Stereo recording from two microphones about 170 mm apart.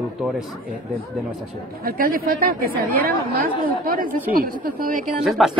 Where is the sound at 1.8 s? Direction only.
60° right (ahead or behind).